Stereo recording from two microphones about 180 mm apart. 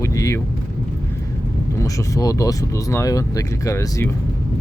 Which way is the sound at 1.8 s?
15° left (ahead or behind).